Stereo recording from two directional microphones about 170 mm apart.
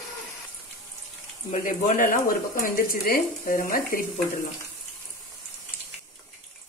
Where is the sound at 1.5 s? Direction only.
50° left (ahead or behind).